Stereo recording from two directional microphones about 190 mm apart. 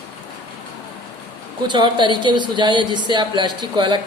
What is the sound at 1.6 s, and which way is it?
A woman's voice, 25° right (ahead or behind).